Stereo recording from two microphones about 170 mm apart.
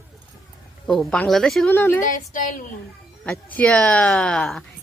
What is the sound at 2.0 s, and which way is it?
Speech, 50° left (ahead or behind).